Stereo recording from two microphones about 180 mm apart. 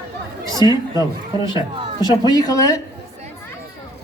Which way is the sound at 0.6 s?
25° left (ahead or behind).